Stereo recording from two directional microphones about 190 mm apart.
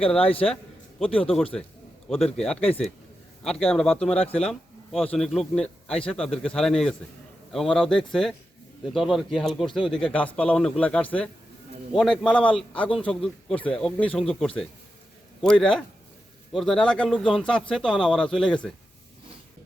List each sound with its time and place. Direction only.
0.2 s a man's voice: 30° left (ahead or behind)
0.9 s a man's voice: centre (ahead or behind)